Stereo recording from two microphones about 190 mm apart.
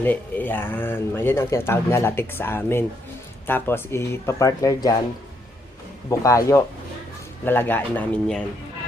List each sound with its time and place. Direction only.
0.0 s speech: 10° left (ahead or behind)
6.1 s speech: 15° left (ahead or behind)